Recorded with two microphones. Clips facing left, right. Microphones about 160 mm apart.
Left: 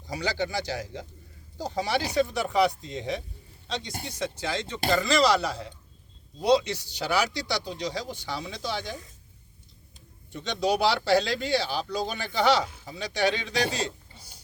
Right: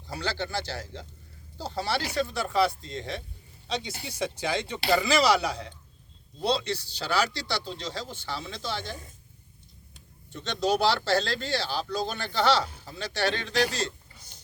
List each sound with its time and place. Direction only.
0.1 s speech: 15° left (ahead or behind)
3.7 s speech: centre (ahead or behind)
4.1 s speech: 15° right (ahead or behind)
4.9 s speech: centre (ahead or behind)
6.4 s speech: 15° left (ahead or behind)
10.3 s speech: 10° left (ahead or behind)
14.2 s a sound: 10° left (ahead or behind)